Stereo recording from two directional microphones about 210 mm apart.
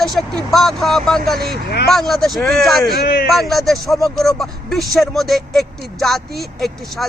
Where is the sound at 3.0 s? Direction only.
45° left (ahead or behind).